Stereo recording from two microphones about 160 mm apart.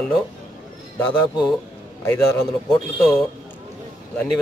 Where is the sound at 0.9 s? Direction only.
15° left (ahead or behind).